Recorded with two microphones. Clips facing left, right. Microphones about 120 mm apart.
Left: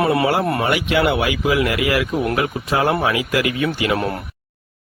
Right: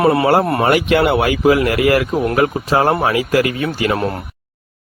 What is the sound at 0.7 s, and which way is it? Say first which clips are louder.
A man's voice: right 5 dB; 50° right (ahead or behind).